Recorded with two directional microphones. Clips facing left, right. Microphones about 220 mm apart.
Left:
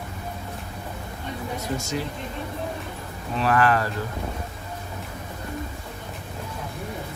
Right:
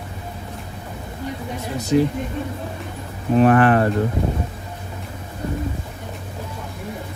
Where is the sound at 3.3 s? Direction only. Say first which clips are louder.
Right 8 dB; 40° right (ahead or behind).